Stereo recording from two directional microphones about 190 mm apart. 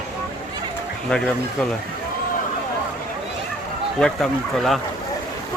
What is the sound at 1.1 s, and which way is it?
Speech, 5° left (ahead or behind).